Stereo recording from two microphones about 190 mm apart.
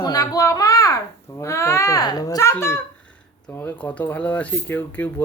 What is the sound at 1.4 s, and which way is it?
Speech, 15° left (ahead or behind).